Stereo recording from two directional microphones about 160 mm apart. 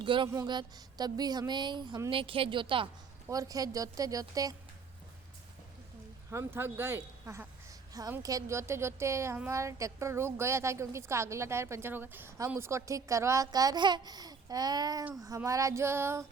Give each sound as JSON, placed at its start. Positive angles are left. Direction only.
{"t": 0.0, "sound": "a woman's voice", "side_deg": -30}
{"t": 3.2, "sound": "a woman's voice", "side_deg": -20}
{"t": 6.3, "sound": "a woman's voice", "side_deg": -15}